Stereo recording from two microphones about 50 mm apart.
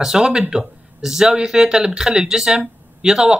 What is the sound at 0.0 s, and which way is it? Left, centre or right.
Speech, centre.